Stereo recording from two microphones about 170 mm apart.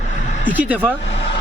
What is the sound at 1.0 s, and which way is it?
Speech, 90° left.